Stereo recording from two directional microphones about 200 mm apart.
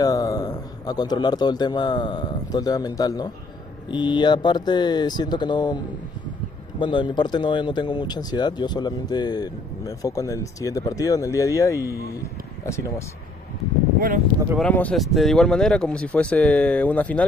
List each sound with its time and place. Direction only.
0.0 s a man's voice: 20° left (ahead or behind)
6.8 s speech: 25° left (ahead or behind)
13.9 s speech: 45° right (ahead or behind)
14.6 s speech: 5° left (ahead or behind)